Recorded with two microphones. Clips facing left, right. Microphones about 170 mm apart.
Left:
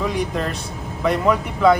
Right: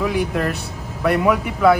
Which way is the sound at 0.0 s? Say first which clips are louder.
Right 2 dB; 5° right (ahead or behind).